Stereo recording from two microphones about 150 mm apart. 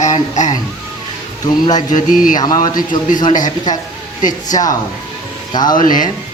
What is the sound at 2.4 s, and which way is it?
Speech, 25° left (ahead or behind).